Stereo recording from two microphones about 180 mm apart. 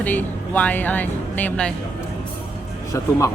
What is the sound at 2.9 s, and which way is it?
Speech, 15° left (ahead or behind).